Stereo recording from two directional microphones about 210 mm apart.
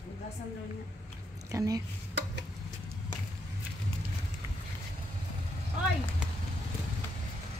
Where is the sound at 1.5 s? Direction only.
15° right (ahead or behind).